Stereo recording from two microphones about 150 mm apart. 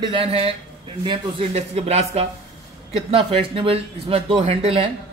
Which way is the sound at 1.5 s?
45° right (ahead or behind).